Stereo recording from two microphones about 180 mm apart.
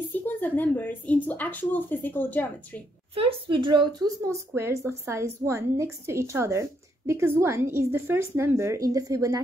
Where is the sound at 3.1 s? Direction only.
30° right (ahead or behind).